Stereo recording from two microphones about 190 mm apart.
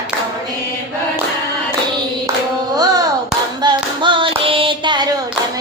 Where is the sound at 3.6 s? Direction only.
25° right (ahead or behind).